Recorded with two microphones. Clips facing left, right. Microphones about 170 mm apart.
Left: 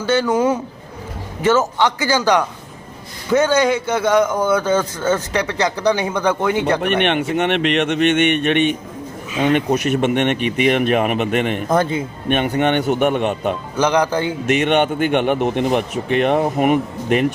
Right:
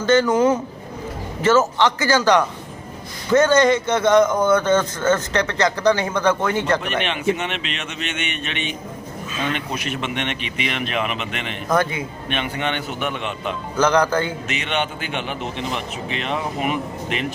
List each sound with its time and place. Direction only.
0.0 s a man's voice: 10° left (ahead or behind)
6.8 s a man's voice: 60° left (ahead or behind)
11.7 s a man's voice: 25° left (ahead or behind)
12.3 s a man's voice: 50° left (ahead or behind)
13.7 s a man's voice: 15° left (ahead or behind)
14.5 s a man's voice: 50° left (ahead or behind)